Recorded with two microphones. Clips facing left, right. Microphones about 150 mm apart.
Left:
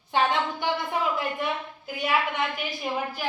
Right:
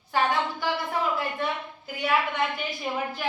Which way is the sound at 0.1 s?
20° left (ahead or behind).